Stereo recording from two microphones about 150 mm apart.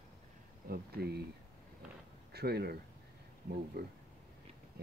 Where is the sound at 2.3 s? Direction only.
90° right.